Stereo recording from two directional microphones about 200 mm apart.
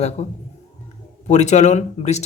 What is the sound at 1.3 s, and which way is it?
Speech, 35° left (ahead or behind).